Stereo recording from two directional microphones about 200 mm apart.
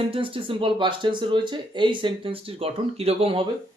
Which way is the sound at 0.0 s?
25° right (ahead or behind).